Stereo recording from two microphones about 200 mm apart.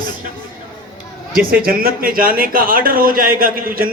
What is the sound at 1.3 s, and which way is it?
Speech, 45° right (ahead or behind).